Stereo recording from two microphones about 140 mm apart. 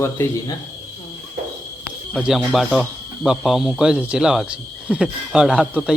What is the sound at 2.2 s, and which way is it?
Speech, 5° right (ahead or behind).